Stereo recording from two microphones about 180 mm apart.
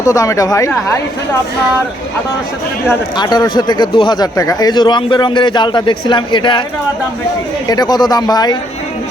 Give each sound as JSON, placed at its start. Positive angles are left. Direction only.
{"t": 0.0, "sound": "speech", "side_deg": 20}
{"t": 3.2, "sound": "speech", "side_deg": 25}
{"t": 7.7, "sound": "speech", "side_deg": 20}